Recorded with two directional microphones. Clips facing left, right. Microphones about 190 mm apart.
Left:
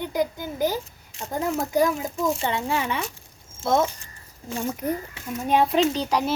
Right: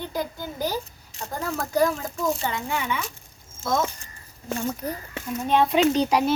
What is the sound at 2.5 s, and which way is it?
A child's voice, 30° left (ahead or behind).